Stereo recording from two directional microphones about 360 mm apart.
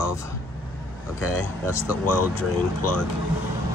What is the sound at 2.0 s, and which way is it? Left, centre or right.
Speech, left.